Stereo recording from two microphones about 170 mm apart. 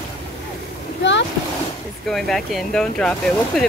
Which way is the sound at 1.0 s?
90° left.